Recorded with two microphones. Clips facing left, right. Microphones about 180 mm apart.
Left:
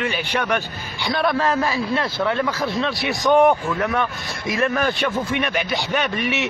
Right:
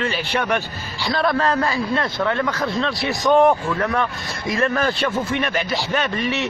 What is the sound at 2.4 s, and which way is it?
A man's voice, 10° left (ahead or behind).